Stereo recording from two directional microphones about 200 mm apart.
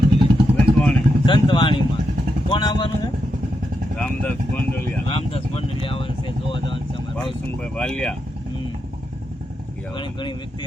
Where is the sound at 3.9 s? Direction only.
5° left (ahead or behind).